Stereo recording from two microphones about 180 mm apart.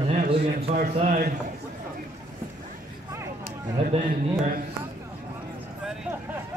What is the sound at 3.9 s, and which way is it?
Speech, 35° right (ahead or behind).